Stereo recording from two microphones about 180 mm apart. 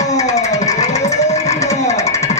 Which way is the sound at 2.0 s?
20° left (ahead or behind).